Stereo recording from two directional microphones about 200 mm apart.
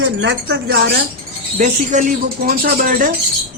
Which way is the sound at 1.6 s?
40° right (ahead or behind).